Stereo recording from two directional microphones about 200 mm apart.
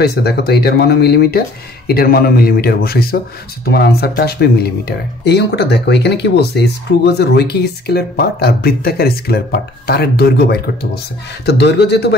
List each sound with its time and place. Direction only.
0.0 s speech: 55° left (ahead or behind)